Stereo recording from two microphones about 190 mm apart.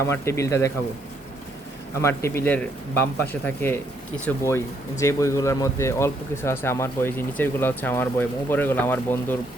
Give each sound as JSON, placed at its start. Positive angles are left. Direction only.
{"t": 0.1, "sound": "speech", "side_deg": 15}
{"t": 2.0, "sound": "speech", "side_deg": 15}